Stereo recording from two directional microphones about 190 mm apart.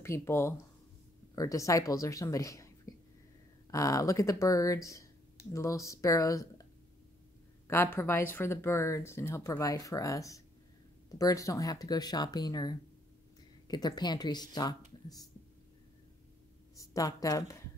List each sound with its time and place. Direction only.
0.0 s speech: 15° left (ahead or behind)
16.7 s speech: 15° left (ahead or behind)